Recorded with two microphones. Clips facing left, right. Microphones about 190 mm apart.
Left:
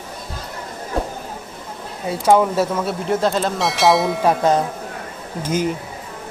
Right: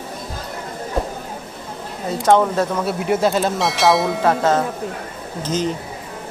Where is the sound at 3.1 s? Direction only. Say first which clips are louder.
Right 2 dB; 5° right (ahead or behind).